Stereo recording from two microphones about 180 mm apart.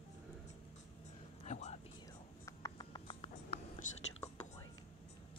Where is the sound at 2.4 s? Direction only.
20° left (ahead or behind).